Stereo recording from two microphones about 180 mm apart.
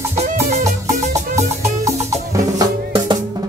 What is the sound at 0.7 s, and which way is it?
Music, 40° right (ahead or behind).